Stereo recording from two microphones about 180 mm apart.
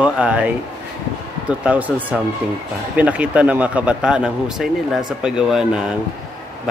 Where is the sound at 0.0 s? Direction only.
5° right (ahead or behind).